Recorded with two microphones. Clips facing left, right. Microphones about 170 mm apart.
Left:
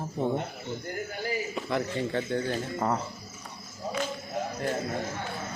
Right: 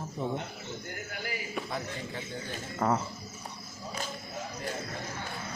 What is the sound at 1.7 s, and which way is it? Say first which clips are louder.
Speech: left 8 dB; 65° left (ahead or behind).